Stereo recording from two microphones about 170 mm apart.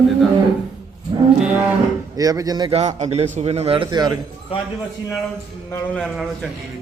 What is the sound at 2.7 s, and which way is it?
A man's voice, 40° right (ahead or behind).